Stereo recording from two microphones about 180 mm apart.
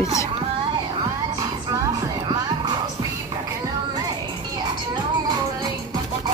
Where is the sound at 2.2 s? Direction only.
25° right (ahead or behind).